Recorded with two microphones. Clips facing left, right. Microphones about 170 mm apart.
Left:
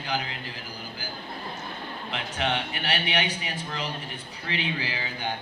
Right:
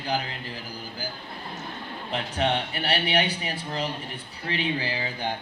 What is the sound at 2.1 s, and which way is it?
A man's voice, 35° right (ahead or behind).